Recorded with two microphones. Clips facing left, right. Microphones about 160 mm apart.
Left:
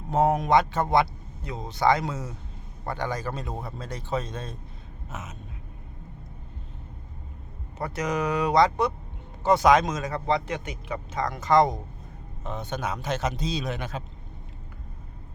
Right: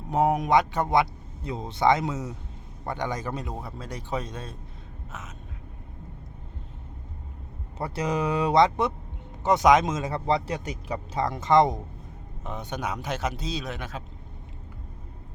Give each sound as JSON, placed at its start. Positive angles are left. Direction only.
{"t": 0.1, "sound": "a man's voice", "side_deg": -15}
{"t": 1.5, "sound": "a man's voice", "side_deg": -25}
{"t": 7.8, "sound": "a man's voice", "side_deg": -30}